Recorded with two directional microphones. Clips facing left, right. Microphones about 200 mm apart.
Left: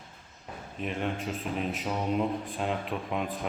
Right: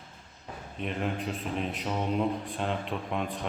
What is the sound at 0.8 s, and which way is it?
Speech, centre (ahead or behind).